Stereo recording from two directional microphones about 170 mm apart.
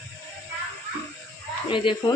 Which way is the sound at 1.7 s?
30° left (ahead or behind).